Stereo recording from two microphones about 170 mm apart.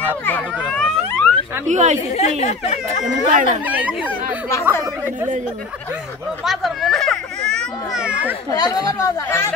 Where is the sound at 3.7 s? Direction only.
10° right (ahead or behind).